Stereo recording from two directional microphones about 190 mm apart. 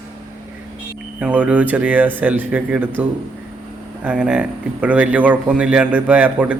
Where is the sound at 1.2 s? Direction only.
5° right (ahead or behind).